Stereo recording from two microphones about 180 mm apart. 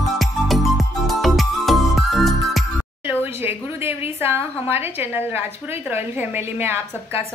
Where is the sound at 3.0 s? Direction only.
10° right (ahead or behind).